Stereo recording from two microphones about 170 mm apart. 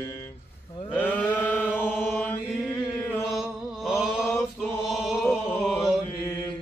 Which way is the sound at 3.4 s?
5° right (ahead or behind).